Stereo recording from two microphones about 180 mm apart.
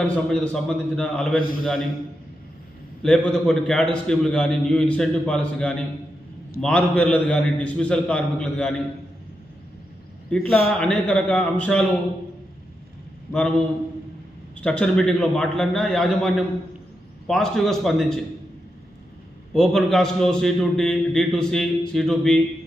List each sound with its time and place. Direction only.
0.0 s a man's voice: 5° left (ahead or behind)
3.0 s a man's voice: 5° left (ahead or behind)
10.3 s a man's voice: 5° left (ahead or behind)
13.3 s a man's voice: 5° left (ahead or behind)
19.5 s a man's voice: 5° left (ahead or behind)